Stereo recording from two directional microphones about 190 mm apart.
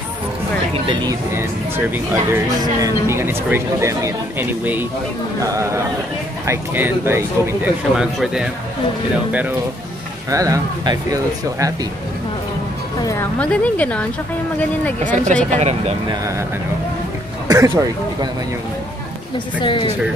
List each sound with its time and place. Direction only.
0.8 s speech: 25° right (ahead or behind)
2.3 s speech: 15° right (ahead or behind)
13.0 s a woman's voice: 15° left (ahead or behind)
15.0 s speech: 40° right (ahead or behind)
16.1 s speech: 15° right (ahead or behind)
17.5 s speech: 20° right (ahead or behind)
19.3 s speech: 25° left (ahead or behind)